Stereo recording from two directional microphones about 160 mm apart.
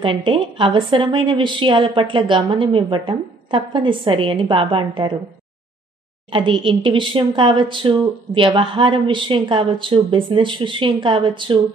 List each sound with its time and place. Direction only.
0.0 s a woman's voice: 30° right (ahead or behind)
6.3 s a woman's voice: 30° right (ahead or behind)